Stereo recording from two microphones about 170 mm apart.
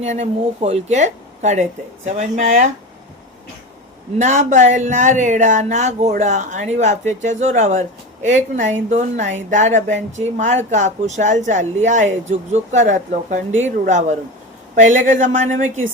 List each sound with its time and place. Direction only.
0.0 s speech: 40° right (ahead or behind)
4.2 s speech: 45° right (ahead or behind)